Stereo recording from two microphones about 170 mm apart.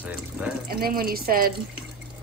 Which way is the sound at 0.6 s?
60° right (ahead or behind).